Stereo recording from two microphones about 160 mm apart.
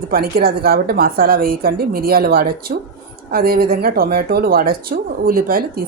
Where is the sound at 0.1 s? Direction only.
70° right (ahead or behind).